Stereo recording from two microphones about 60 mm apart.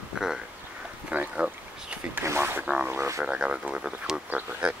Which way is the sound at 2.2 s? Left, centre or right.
Right.